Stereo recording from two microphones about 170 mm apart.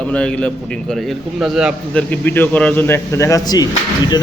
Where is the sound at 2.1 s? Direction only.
10° left (ahead or behind).